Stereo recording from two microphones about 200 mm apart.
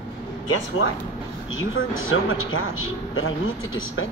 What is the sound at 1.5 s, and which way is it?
A man's voice, 85° left.